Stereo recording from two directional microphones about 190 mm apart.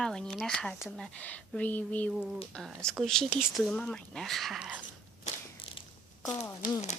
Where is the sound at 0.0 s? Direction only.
5° left (ahead or behind).